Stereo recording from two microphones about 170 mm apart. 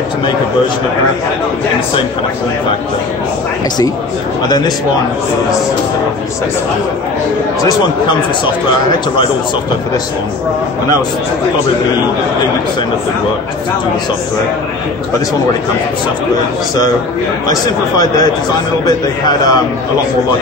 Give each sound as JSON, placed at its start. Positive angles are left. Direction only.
{"t": 17.5, "sound": "a man's voice", "side_deg": 20}